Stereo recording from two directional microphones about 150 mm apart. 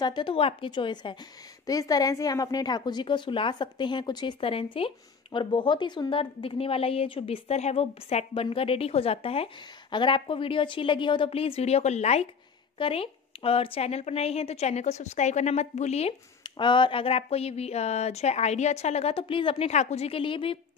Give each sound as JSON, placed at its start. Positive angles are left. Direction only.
{"t": 0.0, "sound": "a woman's voice", "side_deg": 30}
{"t": 12.7, "sound": "speech", "side_deg": 35}
{"t": 16.4, "sound": "speech", "side_deg": 30}